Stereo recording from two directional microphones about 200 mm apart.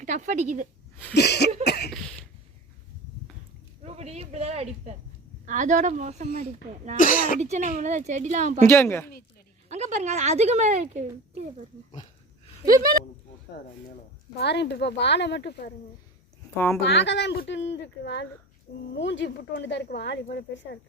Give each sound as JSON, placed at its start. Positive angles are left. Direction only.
{"t": 0.0, "sound": "speech", "side_deg": -40}
{"t": 1.1, "sound": "speech", "side_deg": 55}
{"t": 1.6, "sound": "cough", "side_deg": 55}
{"t": 3.8, "sound": "a sound", "side_deg": -30}
{"t": 5.5, "sound": "speech", "side_deg": -40}
{"t": 6.9, "sound": "speech", "side_deg": 45}
{"t": 7.3, "sound": "speech", "side_deg": -35}
{"t": 8.6, "sound": "speech", "side_deg": 10}
{"t": 9.6, "sound": "speech", "side_deg": -35}
{"t": 12.6, "sound": "speech", "side_deg": -45}
{"t": 14.3, "sound": "speech", "side_deg": 55}
{"t": 16.8, "sound": "speech", "side_deg": 60}